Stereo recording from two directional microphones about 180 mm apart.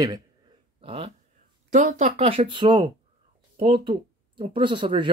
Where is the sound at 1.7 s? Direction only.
40° right (ahead or behind).